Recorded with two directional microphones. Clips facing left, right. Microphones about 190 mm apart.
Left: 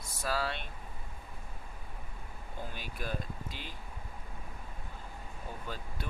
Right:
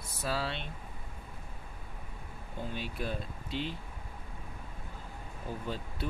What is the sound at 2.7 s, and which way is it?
Speech, 30° right (ahead or behind).